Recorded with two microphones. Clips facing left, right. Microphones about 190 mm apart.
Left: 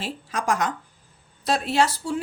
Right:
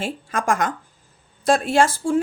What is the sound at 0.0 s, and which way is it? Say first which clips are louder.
A woman's voice: right 4 dB; 50° right (ahead or behind).